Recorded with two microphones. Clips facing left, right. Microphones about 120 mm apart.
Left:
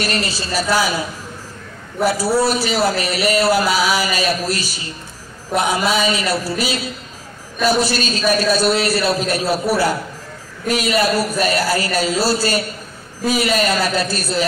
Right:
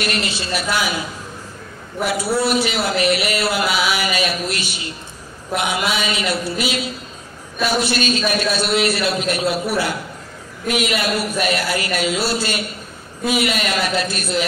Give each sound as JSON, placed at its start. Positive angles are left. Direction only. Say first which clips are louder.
{"t": 0.0, "sound": "a man's voice", "louder": "left 1 dB", "side_deg": 35}
{"t": 2.0, "sound": "a man's voice", "louder": "left 3 dB", "side_deg": 40}